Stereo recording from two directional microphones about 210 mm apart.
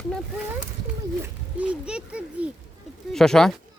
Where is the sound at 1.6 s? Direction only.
5° right (ahead or behind).